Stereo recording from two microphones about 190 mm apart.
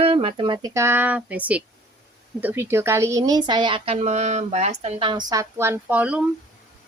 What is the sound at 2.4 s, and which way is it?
Speech, 10° right (ahead or behind).